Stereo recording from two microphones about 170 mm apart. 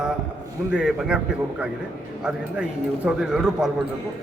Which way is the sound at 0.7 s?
5° right (ahead or behind).